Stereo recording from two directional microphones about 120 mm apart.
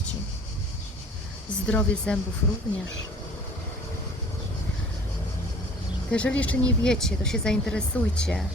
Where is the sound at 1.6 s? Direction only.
10° left (ahead or behind).